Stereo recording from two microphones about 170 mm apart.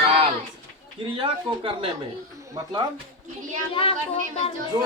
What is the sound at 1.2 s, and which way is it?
Speech, 30° right (ahead or behind).